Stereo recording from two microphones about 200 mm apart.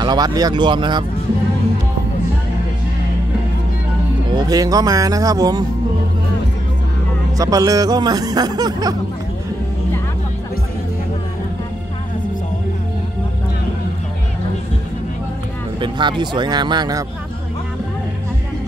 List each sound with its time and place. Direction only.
0.0 s speech: 20° right (ahead or behind)
4.3 s speech: 20° right (ahead or behind)
7.3 s speech: 20° right (ahead or behind)
15.8 s speech: 20° right (ahead or behind)